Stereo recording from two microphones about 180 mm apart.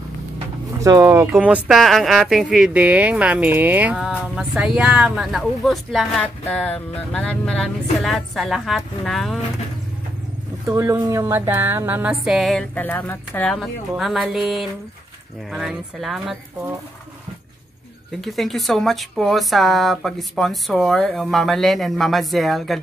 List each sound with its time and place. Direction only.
0.7 s speech: 20° right (ahead or behind)
1.3 s speech: 5° right (ahead or behind)
10.7 s speech: 15° right (ahead or behind); by 16.3 s centre (ahead or behind)
18.2 s speech: centre (ahead or behind)